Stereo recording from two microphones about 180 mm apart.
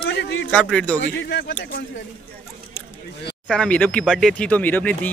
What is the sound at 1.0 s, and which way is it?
Speech, 70° left (ahead or behind).